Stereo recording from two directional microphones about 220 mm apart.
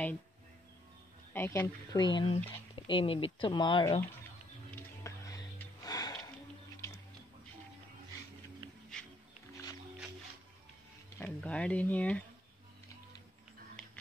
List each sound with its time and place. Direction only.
1.3 s speech: 10° left (ahead or behind)
5.0 s music: 15° left (ahead or behind)
11.1 s speech: 5° left (ahead or behind)